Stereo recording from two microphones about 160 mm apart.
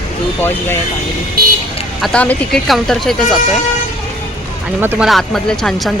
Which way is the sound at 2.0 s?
5° left (ahead or behind).